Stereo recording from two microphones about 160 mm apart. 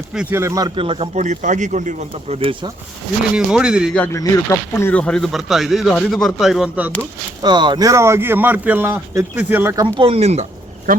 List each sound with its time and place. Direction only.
0.1 s speech: 5° right (ahead or behind)
0.3 s speech: 20° right (ahead or behind)
0.8 s speech: 35° right (ahead or behind)
3.3 s speech: 5° right (ahead or behind)
3.9 s speech: 10° left (ahead or behind); by 6.9 s 5° right (ahead or behind)
7.4 s speech: 30° right (ahead or behind); by 9.7 s 10° right (ahead or behind)
9.7 s speech: 30° right (ahead or behind)
10.9 s speech: 60° right (ahead or behind)